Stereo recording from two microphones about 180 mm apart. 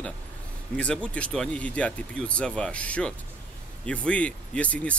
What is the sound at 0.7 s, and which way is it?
Speech, 5° left (ahead or behind).